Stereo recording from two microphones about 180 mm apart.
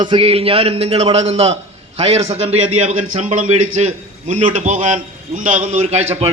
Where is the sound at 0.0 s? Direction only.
30° right (ahead or behind).